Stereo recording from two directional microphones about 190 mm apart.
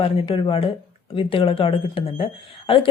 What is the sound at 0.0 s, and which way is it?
Speech, 30° left (ahead or behind).